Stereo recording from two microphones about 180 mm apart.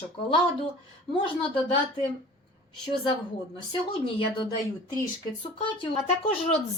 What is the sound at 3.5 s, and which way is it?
Speech, 30° left (ahead or behind).